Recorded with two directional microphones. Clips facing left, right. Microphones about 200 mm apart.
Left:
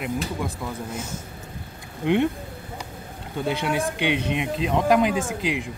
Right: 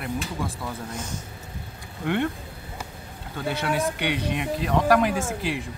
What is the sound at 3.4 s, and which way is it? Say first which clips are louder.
Speech: left 1 dB; 15° left (ahead or behind).